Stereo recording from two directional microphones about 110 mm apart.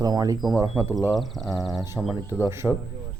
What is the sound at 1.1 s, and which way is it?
Speech, centre (ahead or behind).